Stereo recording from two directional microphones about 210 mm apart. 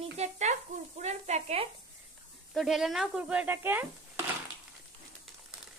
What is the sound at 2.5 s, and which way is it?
Speech, centre (ahead or behind).